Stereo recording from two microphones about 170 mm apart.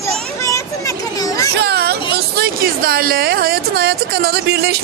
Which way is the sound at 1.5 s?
75° right (ahead or behind).